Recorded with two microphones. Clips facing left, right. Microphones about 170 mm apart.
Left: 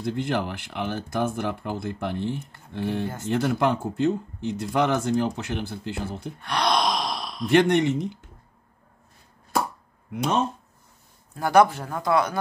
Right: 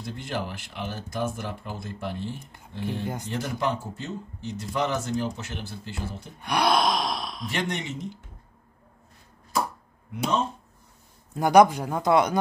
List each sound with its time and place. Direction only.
0.0 s speech: 60° left (ahead or behind)
6.4 s gasp: 10° right (ahead or behind)
7.4 s speech: 60° left (ahead or behind)
11.3 s speech: 15° right (ahead or behind)